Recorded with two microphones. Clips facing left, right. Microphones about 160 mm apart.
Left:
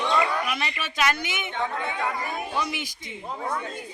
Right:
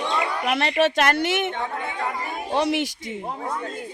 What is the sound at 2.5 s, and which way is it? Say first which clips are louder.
Speech: right 8 dB; 70° right (ahead or behind).